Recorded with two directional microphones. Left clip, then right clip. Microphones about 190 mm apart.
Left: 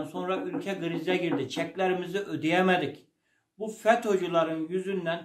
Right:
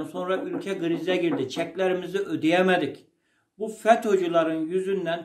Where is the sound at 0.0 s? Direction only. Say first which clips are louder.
Right 3 dB; 20° left (ahead or behind).